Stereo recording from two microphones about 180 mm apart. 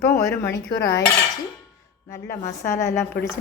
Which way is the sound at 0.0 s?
15° left (ahead or behind).